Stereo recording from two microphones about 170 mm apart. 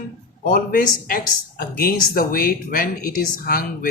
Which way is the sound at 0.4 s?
55° left (ahead or behind).